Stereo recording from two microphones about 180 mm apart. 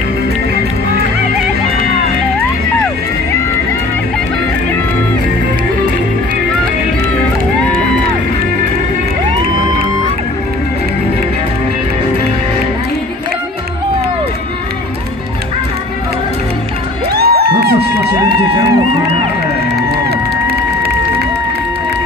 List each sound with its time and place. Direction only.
17.1 s music: 60° right (ahead or behind)